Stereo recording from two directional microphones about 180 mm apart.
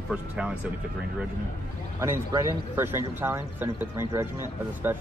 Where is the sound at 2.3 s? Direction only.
20° right (ahead or behind).